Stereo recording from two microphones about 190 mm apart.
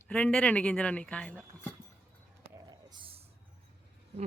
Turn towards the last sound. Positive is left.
turn(degrees=-25)  # may be behind; listen again after turning